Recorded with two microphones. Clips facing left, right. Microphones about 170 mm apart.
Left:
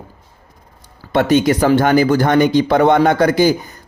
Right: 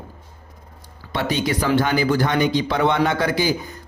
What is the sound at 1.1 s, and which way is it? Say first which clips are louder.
A man's voice: left 9 dB; 45° left (ahead or behind).